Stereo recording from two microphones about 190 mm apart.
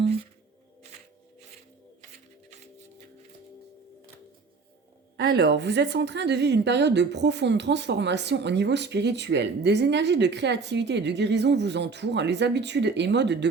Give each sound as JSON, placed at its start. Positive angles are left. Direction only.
{"t": 5.1, "sound": "a woman's voice", "side_deg": -60}